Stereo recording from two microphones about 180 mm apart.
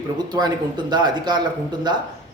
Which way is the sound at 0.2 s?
25° right (ahead or behind).